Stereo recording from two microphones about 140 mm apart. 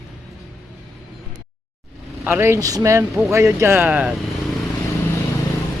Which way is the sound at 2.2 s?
15° right (ahead or behind).